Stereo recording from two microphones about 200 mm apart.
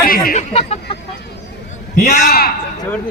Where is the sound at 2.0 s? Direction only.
45° left (ahead or behind).